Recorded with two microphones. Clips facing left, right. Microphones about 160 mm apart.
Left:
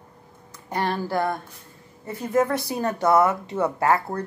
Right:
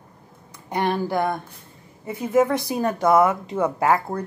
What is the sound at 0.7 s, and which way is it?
Speech, 15° right (ahead or behind).